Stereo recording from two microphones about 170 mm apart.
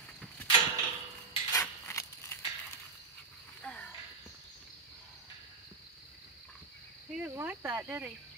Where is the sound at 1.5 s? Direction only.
20° left (ahead or behind).